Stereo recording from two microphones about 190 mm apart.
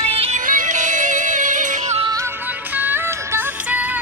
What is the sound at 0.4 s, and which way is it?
Music, 45° right (ahead or behind).